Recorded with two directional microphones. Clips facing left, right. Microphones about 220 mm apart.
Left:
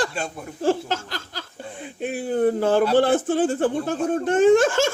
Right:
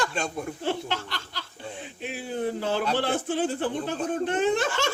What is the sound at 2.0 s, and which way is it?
Speech, 50° left (ahead or behind).